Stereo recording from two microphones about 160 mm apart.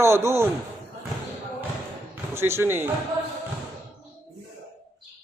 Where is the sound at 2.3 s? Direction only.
15° right (ahead or behind).